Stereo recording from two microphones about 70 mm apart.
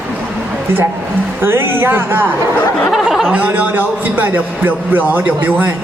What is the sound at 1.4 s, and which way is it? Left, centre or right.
Speech, right.